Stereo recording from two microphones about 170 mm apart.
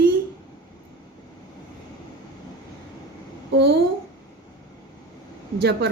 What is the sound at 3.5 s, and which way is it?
Speech, 75° right (ahead or behind).